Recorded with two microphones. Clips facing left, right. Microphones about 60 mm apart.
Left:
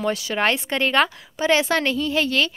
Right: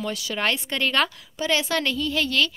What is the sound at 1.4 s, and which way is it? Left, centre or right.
A woman's voice, left.